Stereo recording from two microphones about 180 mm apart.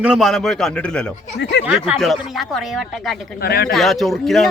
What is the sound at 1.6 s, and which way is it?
Speech, 70° left (ahead or behind).